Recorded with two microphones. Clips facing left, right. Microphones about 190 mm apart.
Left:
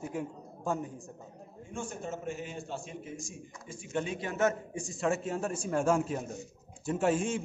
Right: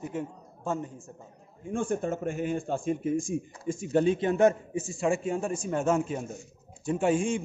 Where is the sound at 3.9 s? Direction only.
30° right (ahead or behind).